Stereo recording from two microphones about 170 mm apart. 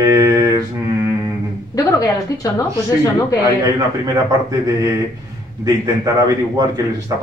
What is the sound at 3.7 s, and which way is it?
Mantra, 20° right (ahead or behind).